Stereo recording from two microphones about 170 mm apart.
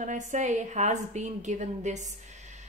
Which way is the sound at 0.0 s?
45° right (ahead or behind).